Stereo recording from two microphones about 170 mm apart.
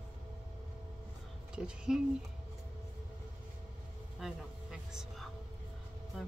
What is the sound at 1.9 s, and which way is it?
Speech, 5° right (ahead or behind).